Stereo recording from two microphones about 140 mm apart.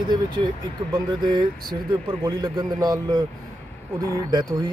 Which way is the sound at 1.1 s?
30° right (ahead or behind).